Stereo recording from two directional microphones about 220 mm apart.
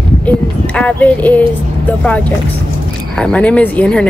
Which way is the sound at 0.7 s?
5° left (ahead or behind).